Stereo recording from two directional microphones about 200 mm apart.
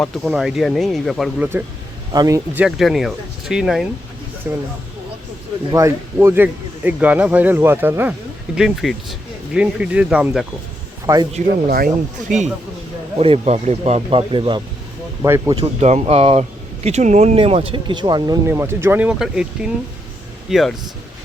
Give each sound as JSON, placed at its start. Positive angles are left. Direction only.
{"t": 0.0, "sound": "speech", "side_deg": 0}
{"t": 2.1, "sound": "speech", "side_deg": -15}
{"t": 2.6, "sound": "speech", "side_deg": 0}
{"t": 5.7, "sound": "speech", "side_deg": -15}
{"t": 11.0, "sound": "speech", "side_deg": -20}
{"t": 13.1, "sound": "speech", "side_deg": -30}
{"t": 15.6, "sound": "speech", "side_deg": -35}